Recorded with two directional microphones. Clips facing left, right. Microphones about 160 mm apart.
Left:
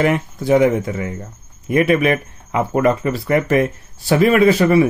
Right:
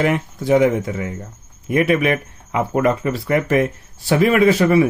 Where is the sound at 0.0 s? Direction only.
45° left (ahead or behind).